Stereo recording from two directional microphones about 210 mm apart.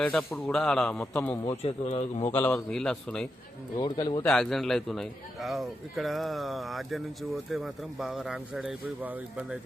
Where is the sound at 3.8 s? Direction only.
20° left (ahead or behind).